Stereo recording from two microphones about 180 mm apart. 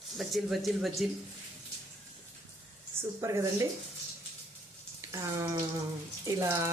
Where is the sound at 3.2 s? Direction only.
15° right (ahead or behind).